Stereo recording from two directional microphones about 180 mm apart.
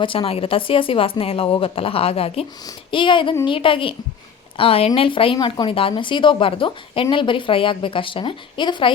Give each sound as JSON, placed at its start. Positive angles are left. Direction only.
{"t": 0.0, "sound": "speech", "side_deg": 30}